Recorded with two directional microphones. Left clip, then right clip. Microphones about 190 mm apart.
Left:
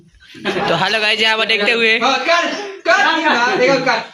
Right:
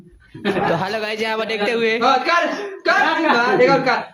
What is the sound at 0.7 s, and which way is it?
Speech, 5° right (ahead or behind).